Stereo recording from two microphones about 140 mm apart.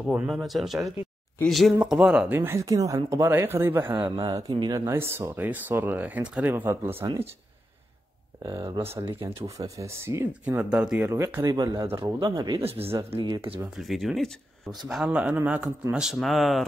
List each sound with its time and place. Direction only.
0.0 s speech: centre (ahead or behind)
3.9 s speech: 30° right (ahead or behind)
8.6 s speech: 40° right (ahead or behind)
9.2 s speech: 20° right (ahead or behind)
12.6 s speech: 45° right (ahead or behind)
13.7 s speech: centre (ahead or behind)